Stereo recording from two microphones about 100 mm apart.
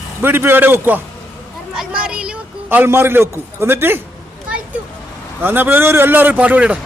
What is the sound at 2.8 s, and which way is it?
A man's voice, 25° right (ahead or behind).